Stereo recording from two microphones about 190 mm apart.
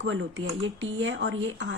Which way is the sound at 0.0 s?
85° right.